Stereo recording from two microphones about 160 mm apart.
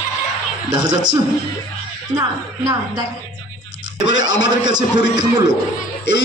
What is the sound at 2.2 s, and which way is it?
Speech, 20° right (ahead or behind).